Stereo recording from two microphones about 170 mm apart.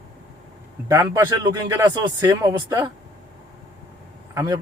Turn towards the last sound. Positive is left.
turn(degrees=-20)  # may be behind; listen again after turning